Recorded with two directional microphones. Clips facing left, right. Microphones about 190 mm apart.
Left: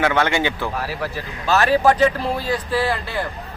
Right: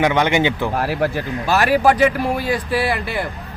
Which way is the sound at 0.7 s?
55° right (ahead or behind).